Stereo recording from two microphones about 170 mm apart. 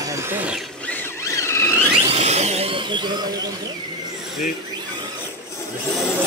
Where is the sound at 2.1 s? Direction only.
40° right (ahead or behind); by 3.5 s 25° right (ahead or behind).